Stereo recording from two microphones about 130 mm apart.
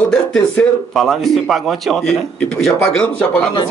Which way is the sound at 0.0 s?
5° left (ahead or behind).